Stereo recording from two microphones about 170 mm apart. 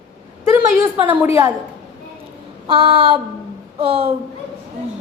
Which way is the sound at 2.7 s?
30° right (ahead or behind).